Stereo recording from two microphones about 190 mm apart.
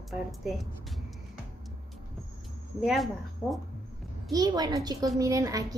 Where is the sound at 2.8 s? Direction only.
Centre (ahead or behind).